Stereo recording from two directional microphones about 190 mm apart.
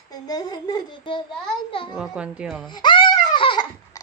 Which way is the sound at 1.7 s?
30° left (ahead or behind).